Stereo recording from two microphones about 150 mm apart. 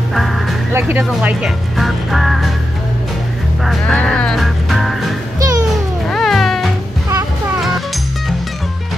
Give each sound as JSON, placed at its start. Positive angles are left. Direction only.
{"t": 0.1, "sound": "music", "side_deg": 0}
{"t": 0.7, "sound": "speech", "side_deg": -15}
{"t": 1.2, "sound": "speech", "side_deg": -5}
{"t": 3.6, "sound": "music", "side_deg": 5}
{"t": 5.4, "sound": "music", "side_deg": -25}
{"t": 6.0, "sound": "cat", "side_deg": 0}